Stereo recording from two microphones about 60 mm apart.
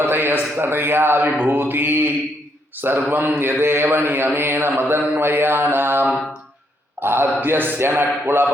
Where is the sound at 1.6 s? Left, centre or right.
Right.